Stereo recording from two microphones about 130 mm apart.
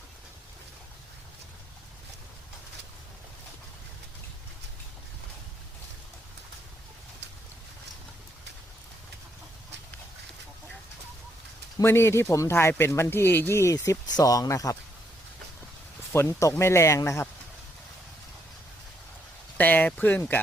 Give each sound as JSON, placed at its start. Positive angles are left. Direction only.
{"t": 11.8, "sound": "speech", "side_deg": 20}
{"t": 16.1, "sound": "speech", "side_deg": 20}
{"t": 19.5, "sound": "a sound", "side_deg": 10}